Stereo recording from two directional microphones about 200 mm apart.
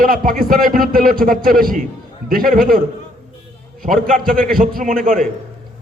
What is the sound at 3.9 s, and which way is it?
A man's voice, 45° right (ahead or behind).